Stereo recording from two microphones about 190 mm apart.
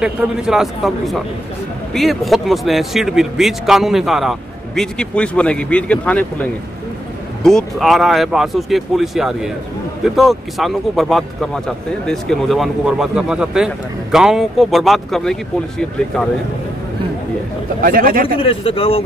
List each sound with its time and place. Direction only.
0.0 s speech: 5° right (ahead or behind)
17.7 s speech: 50° right (ahead or behind)
18.2 s speech: 30° left (ahead or behind)